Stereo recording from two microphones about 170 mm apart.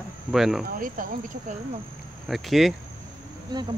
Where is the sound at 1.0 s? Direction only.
55° right (ahead or behind).